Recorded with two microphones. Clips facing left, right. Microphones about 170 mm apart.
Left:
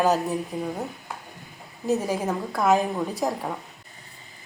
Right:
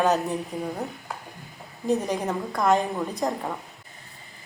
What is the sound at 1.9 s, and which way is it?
A woman's voice, 5° left (ahead or behind).